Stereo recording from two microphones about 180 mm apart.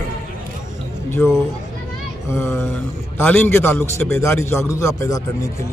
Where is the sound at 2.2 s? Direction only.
10° left (ahead or behind).